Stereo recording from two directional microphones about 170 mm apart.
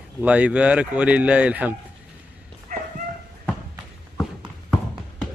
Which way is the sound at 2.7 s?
55° right (ahead or behind).